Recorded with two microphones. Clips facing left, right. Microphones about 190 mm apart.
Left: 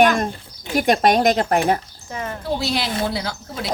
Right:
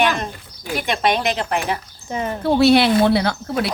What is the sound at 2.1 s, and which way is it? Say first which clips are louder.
Speech: right 5 dB; 20° right (ahead or behind).